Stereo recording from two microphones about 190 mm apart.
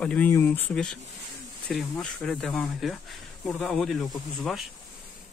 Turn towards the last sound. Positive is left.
turn(degrees=0)  # may be behind; listen again after turning